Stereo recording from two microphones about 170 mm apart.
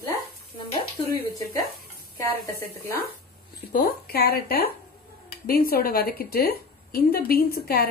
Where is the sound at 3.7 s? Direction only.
60° left (ahead or behind).